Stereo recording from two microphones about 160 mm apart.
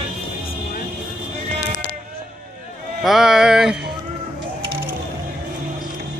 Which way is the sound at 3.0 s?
5° right (ahead or behind).